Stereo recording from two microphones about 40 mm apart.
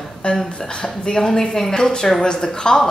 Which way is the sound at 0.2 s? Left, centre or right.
Left.